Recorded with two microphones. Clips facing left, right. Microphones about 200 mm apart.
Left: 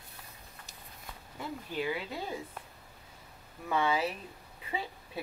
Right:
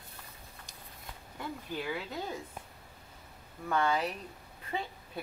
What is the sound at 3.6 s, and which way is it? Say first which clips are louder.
Speech: even; 5° left (ahead or behind).